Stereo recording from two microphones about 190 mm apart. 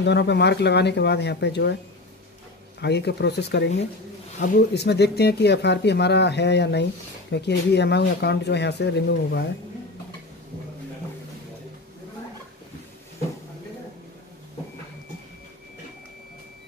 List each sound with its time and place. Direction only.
0.0 s speech: 65° left (ahead or behind)
2.8 s speech: 60° left (ahead or behind)